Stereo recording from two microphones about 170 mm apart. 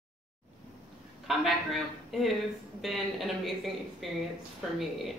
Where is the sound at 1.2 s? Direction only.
Centre (ahead or behind).